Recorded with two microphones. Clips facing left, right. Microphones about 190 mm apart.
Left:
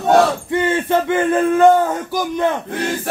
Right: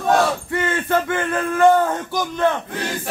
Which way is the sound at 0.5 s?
25° left (ahead or behind).